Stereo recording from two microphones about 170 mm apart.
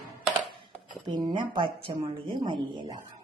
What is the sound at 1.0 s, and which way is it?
A woman's voice, 25° right (ahead or behind).